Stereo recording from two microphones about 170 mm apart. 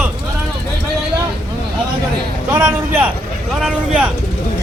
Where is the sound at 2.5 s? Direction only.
10° right (ahead or behind).